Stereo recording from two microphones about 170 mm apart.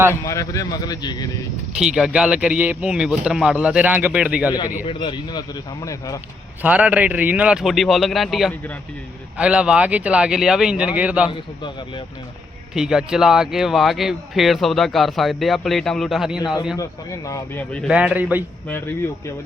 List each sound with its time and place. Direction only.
0.1 s a man's voice: 20° left (ahead or behind)
1.8 s speech: 5° right (ahead or behind)
4.9 s a man's voice: 30° left (ahead or behind)
6.6 s speech: 5° right (ahead or behind)
11.3 s a man's voice: 25° left (ahead or behind)
12.7 s speech: 5° right (ahead or behind)
16.7 s speech: 20° left (ahead or behind)
17.9 s speech: 10° right (ahead or behind)